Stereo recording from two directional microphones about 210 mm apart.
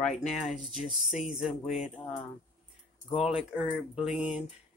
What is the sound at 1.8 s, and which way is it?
Speech, 25° left (ahead or behind).